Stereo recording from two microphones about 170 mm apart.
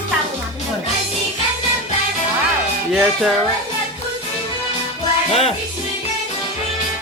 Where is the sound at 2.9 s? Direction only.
Centre (ahead or behind).